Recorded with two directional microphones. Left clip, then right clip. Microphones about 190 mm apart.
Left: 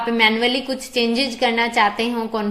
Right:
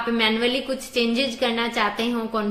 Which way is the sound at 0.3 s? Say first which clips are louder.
Left 3 dB; 15° left (ahead or behind).